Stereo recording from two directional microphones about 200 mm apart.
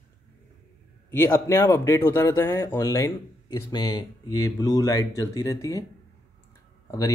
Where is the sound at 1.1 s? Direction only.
15° left (ahead or behind).